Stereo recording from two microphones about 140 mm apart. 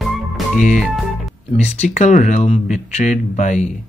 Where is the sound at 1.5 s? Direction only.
50° left (ahead or behind).